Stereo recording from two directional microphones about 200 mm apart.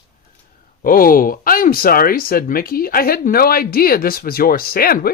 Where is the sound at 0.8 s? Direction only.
45° left (ahead or behind).